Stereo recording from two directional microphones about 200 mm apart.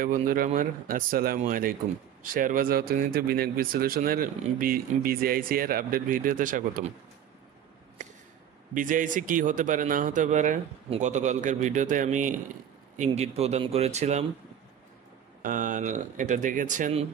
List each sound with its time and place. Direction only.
0.0 s speech: 45° right (ahead or behind)
8.0 s a sound: 35° right (ahead or behind)
8.7 s speech: 40° right (ahead or behind)
15.4 s speech: 40° right (ahead or behind)